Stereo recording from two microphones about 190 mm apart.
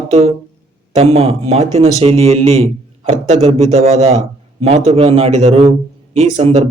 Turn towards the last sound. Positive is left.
turn(degrees=-35)  # may be behind; listen again after turning